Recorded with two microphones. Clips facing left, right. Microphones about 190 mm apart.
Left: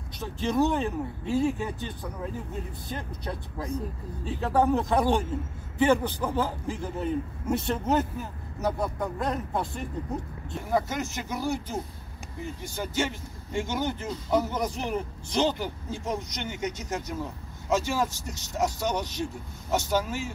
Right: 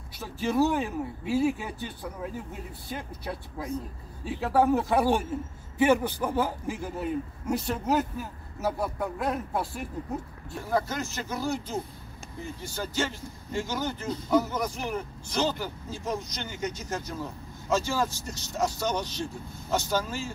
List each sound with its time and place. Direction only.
0.2 s speech: 5° right (ahead or behind)
2.9 s a man's voice: 10° right (ahead or behind)
10.7 s speech: 20° left (ahead or behind)